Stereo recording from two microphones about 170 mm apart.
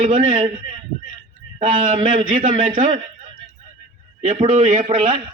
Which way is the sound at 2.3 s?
45° right (ahead or behind).